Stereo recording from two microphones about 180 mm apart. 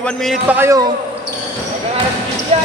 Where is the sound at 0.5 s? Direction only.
15° right (ahead or behind).